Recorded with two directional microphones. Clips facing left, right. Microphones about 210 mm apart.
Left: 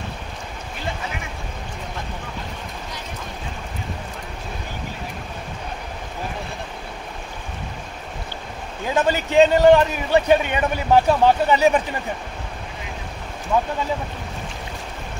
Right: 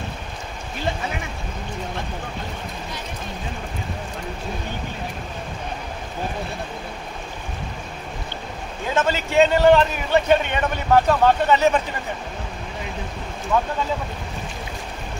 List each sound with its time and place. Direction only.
8.9 s a man's voice: 15° left (ahead or behind)
13.5 s a man's voice: 15° left (ahead or behind)